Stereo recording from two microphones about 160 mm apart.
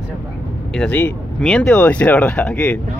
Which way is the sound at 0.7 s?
5° left (ahead or behind).